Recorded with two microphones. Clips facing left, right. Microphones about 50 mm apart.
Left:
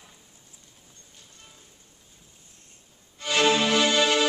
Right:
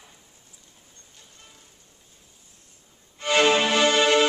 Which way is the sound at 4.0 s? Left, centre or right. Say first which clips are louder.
Right 3 dB; centre.